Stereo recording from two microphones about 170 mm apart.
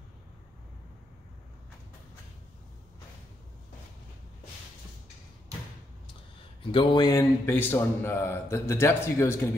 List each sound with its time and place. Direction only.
6.6 s a man's voice: 30° left (ahead or behind)